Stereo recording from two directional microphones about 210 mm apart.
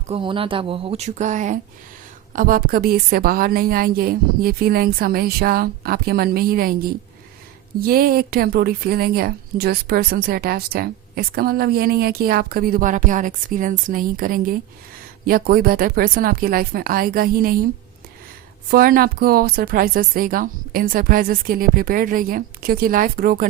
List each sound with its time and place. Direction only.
0.1 s a woman's voice: 25° right (ahead or behind); by 17.6 s 45° right (ahead or behind)
18.7 s a woman's voice: 45° right (ahead or behind)